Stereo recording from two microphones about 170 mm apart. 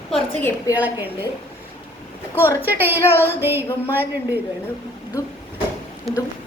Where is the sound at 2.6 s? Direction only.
10° right (ahead or behind).